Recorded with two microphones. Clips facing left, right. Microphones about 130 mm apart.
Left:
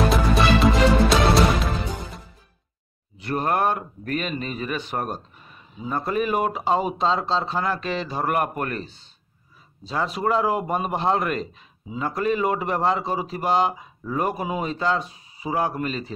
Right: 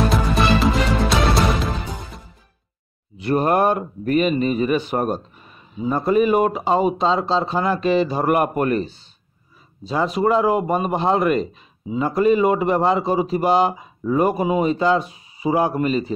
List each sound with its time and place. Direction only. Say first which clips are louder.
0.1 s music: right 1 dB; centre (ahead or behind)
3.2 s a man's voice: right 6 dB; 15° right (ahead or behind)
9.8 s a man's voice: right 5 dB; 5° right (ahead or behind)